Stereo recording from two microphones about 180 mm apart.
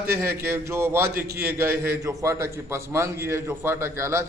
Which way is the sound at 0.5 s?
15° right (ahead or behind).